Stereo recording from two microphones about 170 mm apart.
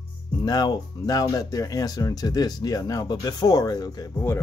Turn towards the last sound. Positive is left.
turn(degrees=20)  # may be behind; listen again after turning